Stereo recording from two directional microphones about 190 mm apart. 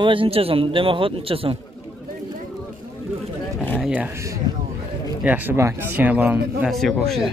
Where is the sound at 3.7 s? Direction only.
5° right (ahead or behind).